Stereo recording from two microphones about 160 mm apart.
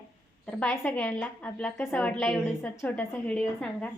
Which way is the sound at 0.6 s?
5° left (ahead or behind).